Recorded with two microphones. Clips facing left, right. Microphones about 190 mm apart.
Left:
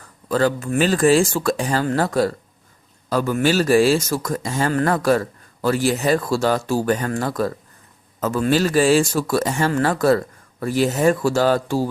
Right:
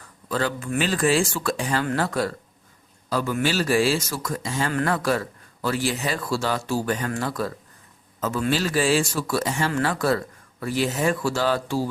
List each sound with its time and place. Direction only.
0.3 s speech: 40° left (ahead or behind)